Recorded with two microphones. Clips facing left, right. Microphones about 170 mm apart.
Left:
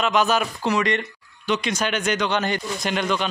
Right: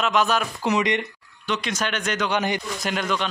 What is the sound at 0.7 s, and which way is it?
Speech, 15° right (ahead or behind).